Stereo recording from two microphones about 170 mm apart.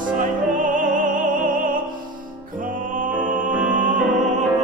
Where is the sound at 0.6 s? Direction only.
55° right (ahead or behind).